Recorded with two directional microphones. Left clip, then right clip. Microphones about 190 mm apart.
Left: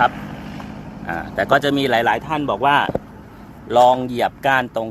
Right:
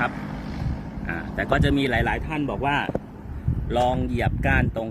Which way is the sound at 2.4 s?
Centre (ahead or behind).